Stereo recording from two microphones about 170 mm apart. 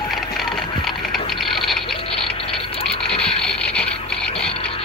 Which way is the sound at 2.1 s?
35° left (ahead or behind).